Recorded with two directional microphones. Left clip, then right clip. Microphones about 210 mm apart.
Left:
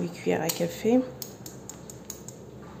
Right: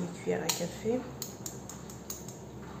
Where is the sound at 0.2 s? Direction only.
45° left (ahead or behind).